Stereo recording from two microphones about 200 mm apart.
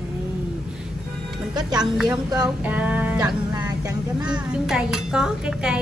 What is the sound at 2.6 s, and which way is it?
Music, 5° right (ahead or behind).